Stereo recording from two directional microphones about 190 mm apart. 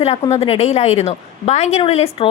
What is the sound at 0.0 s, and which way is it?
A woman's voice, 35° left (ahead or behind).